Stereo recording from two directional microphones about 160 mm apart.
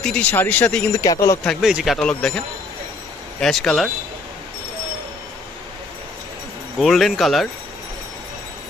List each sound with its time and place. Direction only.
0.0 s speech: 5° left (ahead or behind)
1.0 s a man's voice: 20° left (ahead or behind)
1.4 s speech: centre (ahead or behind)
6.8 s speech: centre (ahead or behind)